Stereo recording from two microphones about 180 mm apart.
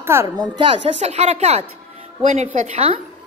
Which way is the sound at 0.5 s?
35° right (ahead or behind).